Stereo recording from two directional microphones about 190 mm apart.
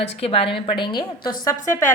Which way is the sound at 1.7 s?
15° left (ahead or behind).